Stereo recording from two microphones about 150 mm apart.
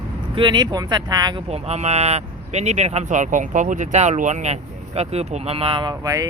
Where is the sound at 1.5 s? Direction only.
45° right (ahead or behind).